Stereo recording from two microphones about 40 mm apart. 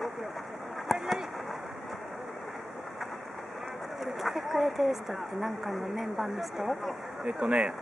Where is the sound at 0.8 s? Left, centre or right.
Centre.